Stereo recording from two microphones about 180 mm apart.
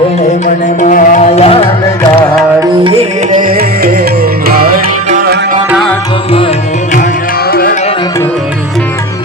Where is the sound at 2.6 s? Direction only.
25° right (ahead or behind); by 5.3 s 50° right (ahead or behind).